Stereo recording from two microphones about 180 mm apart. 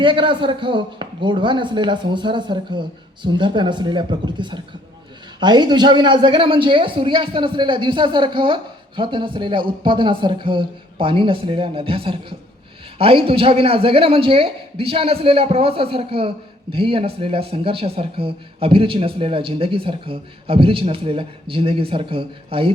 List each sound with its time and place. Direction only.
0.0 s a man's voice: 25° right (ahead or behind)